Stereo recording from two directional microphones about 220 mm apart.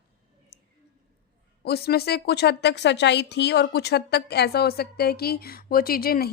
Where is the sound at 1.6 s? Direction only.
45° left (ahead or behind).